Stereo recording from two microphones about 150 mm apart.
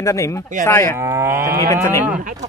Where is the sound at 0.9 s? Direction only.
15° right (ahead or behind).